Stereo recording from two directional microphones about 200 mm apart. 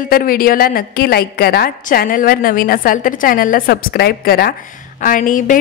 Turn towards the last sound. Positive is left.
turn(degrees=40)  # may be behind; listen again after turning